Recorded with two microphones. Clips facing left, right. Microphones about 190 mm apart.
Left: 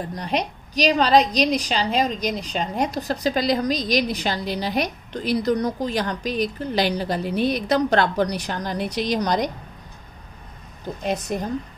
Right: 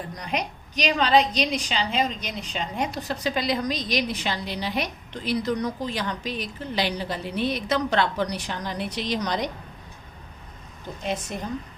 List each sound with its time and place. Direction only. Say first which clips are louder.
0.1 s a woman's voice: left 4 dB; 30° left (ahead or behind)
11.1 s a woman's voice: left 5 dB; 40° left (ahead or behind)